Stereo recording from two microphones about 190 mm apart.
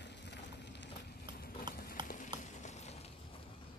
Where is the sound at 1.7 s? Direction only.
25° right (ahead or behind).